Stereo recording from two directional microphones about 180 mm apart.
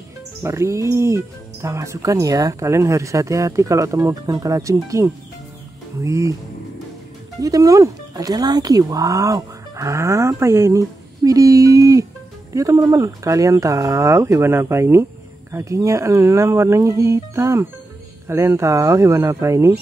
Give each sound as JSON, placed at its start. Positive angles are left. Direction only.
{"t": 0.4, "sound": "speech", "side_deg": -15}
{"t": 7.4, "sound": "speech", "side_deg": -20}